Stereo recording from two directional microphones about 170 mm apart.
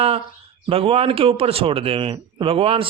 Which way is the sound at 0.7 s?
35° right (ahead or behind).